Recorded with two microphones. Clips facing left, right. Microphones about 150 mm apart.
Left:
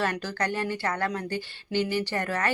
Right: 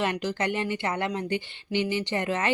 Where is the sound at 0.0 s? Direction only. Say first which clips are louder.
Right 1 dB; 20° right (ahead or behind).